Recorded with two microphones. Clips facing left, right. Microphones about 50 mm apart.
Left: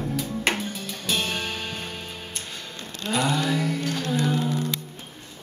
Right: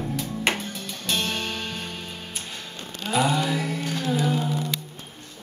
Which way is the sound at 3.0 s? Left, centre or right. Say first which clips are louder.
Right 1 dB; centre.